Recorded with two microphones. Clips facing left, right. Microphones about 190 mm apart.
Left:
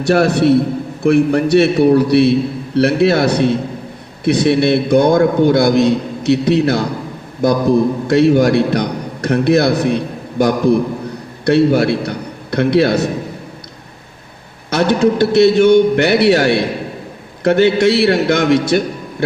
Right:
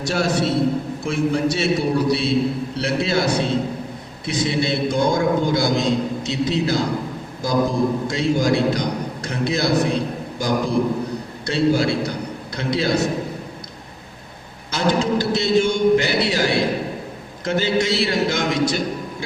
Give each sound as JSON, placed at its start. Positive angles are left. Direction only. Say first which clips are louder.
{"t": 0.0, "sound": "a man's voice", "louder": "left 8 dB", "side_deg": 60}
{"t": 14.7, "sound": "a man's voice", "louder": "left 6 dB", "side_deg": 60}